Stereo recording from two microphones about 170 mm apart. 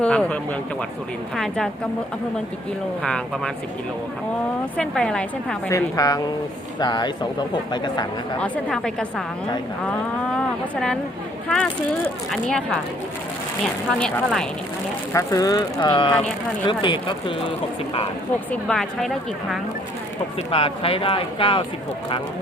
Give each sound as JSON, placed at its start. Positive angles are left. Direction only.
{"t": 0.0, "sound": "speech", "side_deg": 5}
{"t": 1.4, "sound": "speech", "side_deg": 0}
{"t": 3.0, "sound": "speech", "side_deg": 5}
{"t": 4.8, "sound": "speech", "side_deg": 5}
{"t": 5.6, "sound": "speech", "side_deg": 20}
{"t": 8.4, "sound": "speech", "side_deg": 5}
{"t": 9.8, "sound": "moo", "side_deg": 5}
{"t": 11.4, "sound": "speech", "side_deg": 5}
{"t": 14.0, "sound": "speech", "side_deg": 0}
{"t": 15.1, "sound": "speech", "side_deg": 20}
{"t": 18.5, "sound": "speech", "side_deg": 5}
{"t": 20.5, "sound": "speech", "side_deg": 35}